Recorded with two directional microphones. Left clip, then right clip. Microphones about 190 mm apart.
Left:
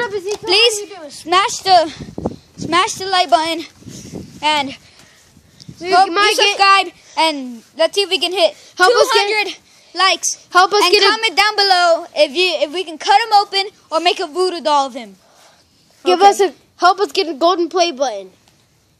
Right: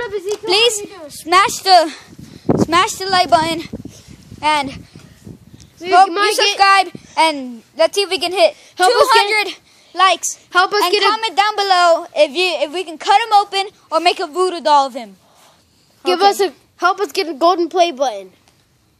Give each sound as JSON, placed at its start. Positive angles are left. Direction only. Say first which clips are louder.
{"t": 0.3, "sound": "a sound", "louder": "left 1 dB", "side_deg": -10}
{"t": 1.0, "sound": "a woman's voice", "louder": "right 2 dB", "side_deg": -10}
{"t": 6.0, "sound": "a woman's voice", "louder": "left 2 dB", "side_deg": 5}
{"t": 6.6, "sound": "a woman's voice", "louder": "right 2 dB", "side_deg": -5}
{"t": 7.2, "sound": "a child's voice", "louder": "right 1 dB", "side_deg": -20}
{"t": 8.8, "sound": "a woman's voice", "louder": "left 1 dB", "side_deg": 10}
{"t": 9.1, "sound": "a woman's voice", "louder": "right 2 dB", "side_deg": -20}
{"t": 10.5, "sound": "a woman's voice", "louder": "left 3 dB", "side_deg": 10}
{"t": 11.8, "sound": "a woman's voice", "louder": "right 1 dB", "side_deg": -15}
{"t": 16.0, "sound": "a woman's voice", "louder": "left 3 dB", "side_deg": 10}